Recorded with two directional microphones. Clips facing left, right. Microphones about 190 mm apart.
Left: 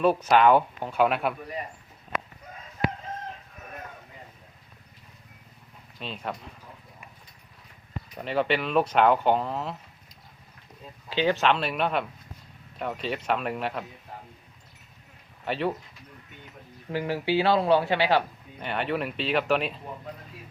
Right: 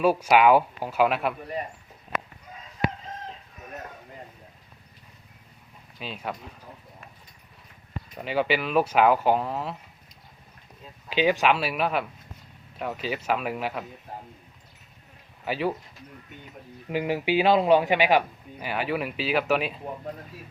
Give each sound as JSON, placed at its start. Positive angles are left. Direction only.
{"t": 0.0, "sound": "speech", "side_deg": -10}
{"t": 6.0, "sound": "speech", "side_deg": 0}
{"t": 8.1, "sound": "speech", "side_deg": 0}
{"t": 11.1, "sound": "speech", "side_deg": -15}
{"t": 15.4, "sound": "speech", "side_deg": -5}
{"t": 16.9, "sound": "speech", "side_deg": -15}
{"t": 18.6, "sound": "speech", "side_deg": -5}